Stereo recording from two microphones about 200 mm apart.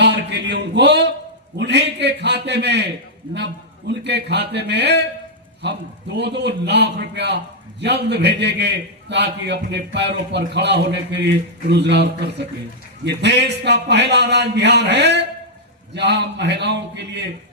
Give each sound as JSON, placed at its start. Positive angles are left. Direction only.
{"t": 0.0, "sound": "a man's voice", "side_deg": -60}